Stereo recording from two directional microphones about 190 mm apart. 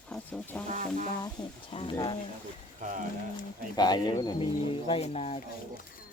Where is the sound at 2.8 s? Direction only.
40° right (ahead or behind).